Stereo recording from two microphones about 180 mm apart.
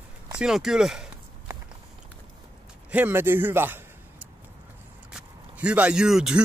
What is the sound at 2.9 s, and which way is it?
Speech, 10° right (ahead or behind).